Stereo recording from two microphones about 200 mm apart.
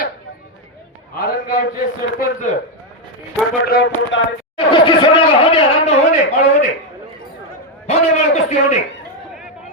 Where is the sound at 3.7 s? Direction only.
55° left (ahead or behind).